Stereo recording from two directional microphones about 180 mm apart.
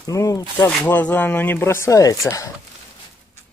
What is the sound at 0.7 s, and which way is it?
Speech, 5° left (ahead or behind).